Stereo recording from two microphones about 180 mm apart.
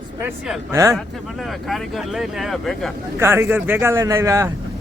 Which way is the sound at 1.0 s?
Centre (ahead or behind).